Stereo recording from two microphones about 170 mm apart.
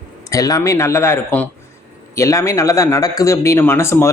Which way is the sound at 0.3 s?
20° left (ahead or behind).